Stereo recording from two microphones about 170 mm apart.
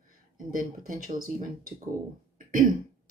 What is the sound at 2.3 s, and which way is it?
Throat clearing, 50° right (ahead or behind).